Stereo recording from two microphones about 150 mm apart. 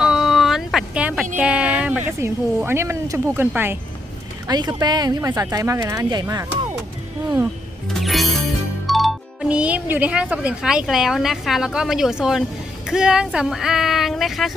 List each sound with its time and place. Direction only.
0.0 s a sound: centre (ahead or behind)
1.4 s speech: 10° right (ahead or behind)
4.4 s speech: 25° right (ahead or behind)
7.9 s music: centre (ahead or behind)
8.9 s speech: centre (ahead or behind)